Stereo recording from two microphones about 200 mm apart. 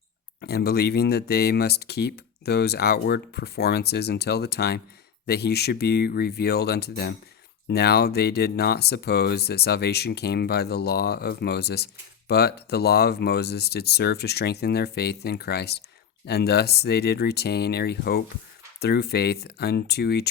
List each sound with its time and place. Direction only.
0.4 s speech: 55° left (ahead or behind)